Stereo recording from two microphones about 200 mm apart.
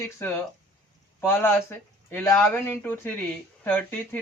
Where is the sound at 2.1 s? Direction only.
10° left (ahead or behind).